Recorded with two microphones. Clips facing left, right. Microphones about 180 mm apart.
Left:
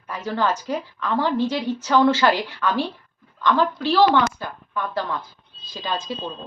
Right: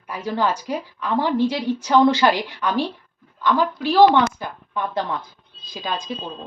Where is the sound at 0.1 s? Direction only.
10° right (ahead or behind).